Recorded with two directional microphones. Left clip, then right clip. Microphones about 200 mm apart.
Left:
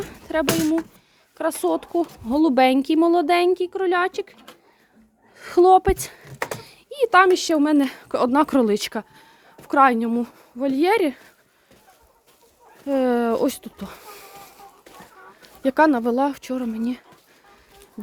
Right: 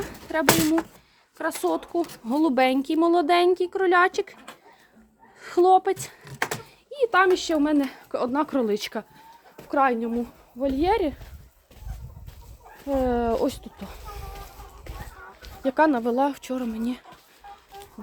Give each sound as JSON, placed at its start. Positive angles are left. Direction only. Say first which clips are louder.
{"t": 0.0, "sound": "a sound", "louder": "left 3 dB", "side_deg": 20}
{"t": 1.4, "sound": "speech", "louder": "left 3 dB", "side_deg": 20}
{"t": 5.4, "sound": "speech", "louder": "left 4 dB", "side_deg": 20}
{"t": 12.9, "sound": "a child's voice", "louder": "left 3 dB", "side_deg": 45}
{"t": 15.6, "sound": "speech", "louder": "left 3 dB", "side_deg": 35}